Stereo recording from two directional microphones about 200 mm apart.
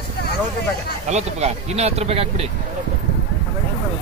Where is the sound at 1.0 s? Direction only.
35° right (ahead or behind).